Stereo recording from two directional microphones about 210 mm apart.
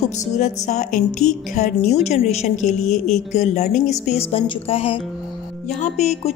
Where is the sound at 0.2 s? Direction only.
35° left (ahead or behind).